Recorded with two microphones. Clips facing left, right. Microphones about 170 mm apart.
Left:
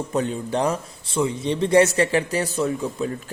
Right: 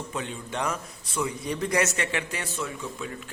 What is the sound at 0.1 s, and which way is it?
A man's voice, 40° left (ahead or behind).